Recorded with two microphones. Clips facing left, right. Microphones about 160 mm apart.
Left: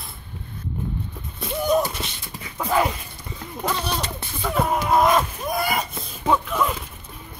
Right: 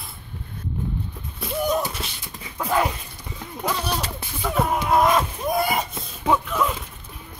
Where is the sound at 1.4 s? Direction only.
5° right (ahead or behind).